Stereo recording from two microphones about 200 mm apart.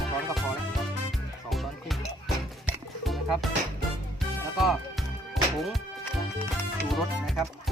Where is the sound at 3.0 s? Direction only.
Centre (ahead or behind).